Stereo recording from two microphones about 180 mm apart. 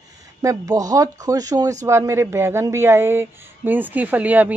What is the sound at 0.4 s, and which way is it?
Speech, 20° right (ahead or behind).